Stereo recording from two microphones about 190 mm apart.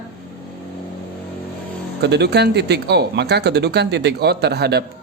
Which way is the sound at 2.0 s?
60° right (ahead or behind).